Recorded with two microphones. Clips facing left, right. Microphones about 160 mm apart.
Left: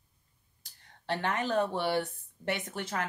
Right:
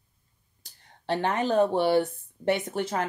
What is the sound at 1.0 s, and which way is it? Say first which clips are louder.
Speech: right 5 dB; 30° right (ahead or behind).